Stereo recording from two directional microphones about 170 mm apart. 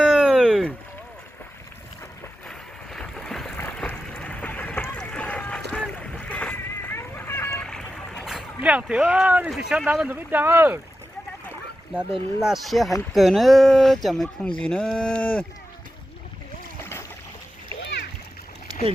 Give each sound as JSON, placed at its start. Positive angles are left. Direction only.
{"t": 0.0, "sound": "a sound", "side_deg": -5}
{"t": 2.5, "sound": "boat", "side_deg": 5}
{"t": 12.4, "sound": "speech", "side_deg": 0}